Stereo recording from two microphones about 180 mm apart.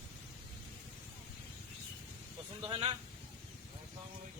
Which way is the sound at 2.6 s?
25° right (ahead or behind).